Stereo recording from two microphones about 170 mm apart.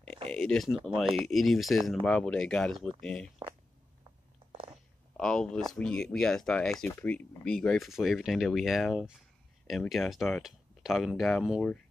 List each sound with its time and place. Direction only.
0.3 s speech: 5° left (ahead or behind)
4.5 s a sound: 30° right (ahead or behind)
5.1 s speech: 5° left (ahead or behind)